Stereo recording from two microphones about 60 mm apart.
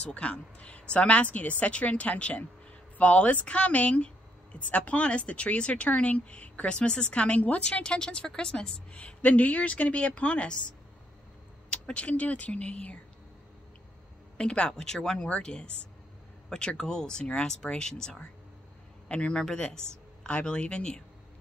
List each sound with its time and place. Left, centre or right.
0.0 s a woman's voice: left
11.7 s a woman's voice: centre
14.3 s speech: centre